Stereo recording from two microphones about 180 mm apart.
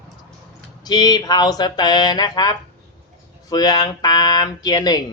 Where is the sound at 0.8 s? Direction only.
20° left (ahead or behind).